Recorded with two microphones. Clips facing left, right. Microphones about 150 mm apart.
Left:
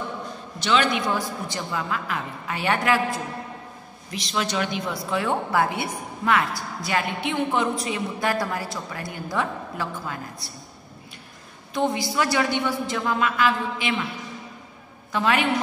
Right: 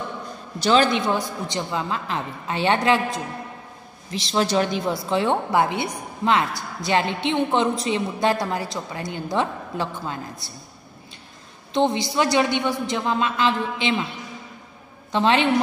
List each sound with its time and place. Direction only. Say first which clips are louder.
0.6 s a woman's voice: right 4 dB; 35° right (ahead or behind)
1.1 s a woman's voice: right 2 dB; 20° right (ahead or behind)
11.7 s a woman's voice: right 3 dB; 25° right (ahead or behind)
15.1 s a woman's voice: right 3 dB; 25° right (ahead or behind)